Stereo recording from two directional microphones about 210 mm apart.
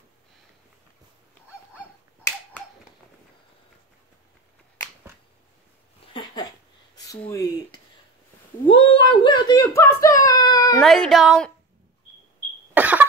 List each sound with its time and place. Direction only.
6.1 s a sound: 20° left (ahead or behind)
7.0 s speech: 15° left (ahead or behind)
8.6 s a sound: 25° left (ahead or behind)
10.2 s whimper: 15° left (ahead or behind)
10.8 s speech: centre (ahead or behind)
12.7 s cough: 10° right (ahead or behind)